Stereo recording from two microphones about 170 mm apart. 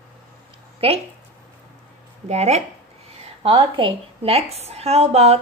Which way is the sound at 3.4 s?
30° right (ahead or behind).